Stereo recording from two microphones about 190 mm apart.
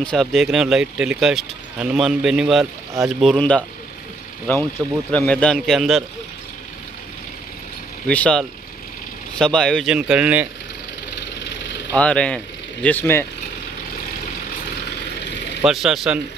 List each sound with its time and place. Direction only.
0.0 s speech: 5° left (ahead or behind)
5.1 s speech: 5° left (ahead or behind)
8.1 s speech: 5° left (ahead or behind)
11.1 s engine: 65° left (ahead or behind)
11.9 s speech: 5° left (ahead or behind)
15.6 s speech: centre (ahead or behind)